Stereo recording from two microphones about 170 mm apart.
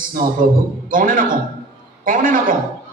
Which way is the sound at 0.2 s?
55° right (ahead or behind).